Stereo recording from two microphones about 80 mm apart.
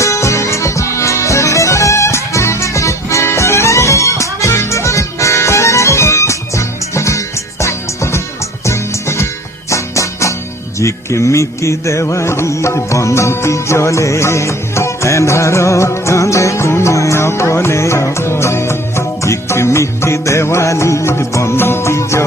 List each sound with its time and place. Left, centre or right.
0.0 s music: left
10.8 s speech: left